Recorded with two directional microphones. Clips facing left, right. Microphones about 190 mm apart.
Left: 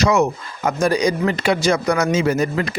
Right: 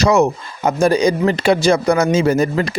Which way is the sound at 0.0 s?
35° right (ahead or behind).